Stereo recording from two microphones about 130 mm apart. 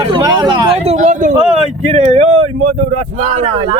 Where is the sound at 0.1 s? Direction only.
35° right (ahead or behind).